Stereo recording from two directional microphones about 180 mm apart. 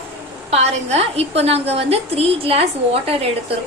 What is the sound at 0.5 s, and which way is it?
A woman's voice, 35° right (ahead or behind).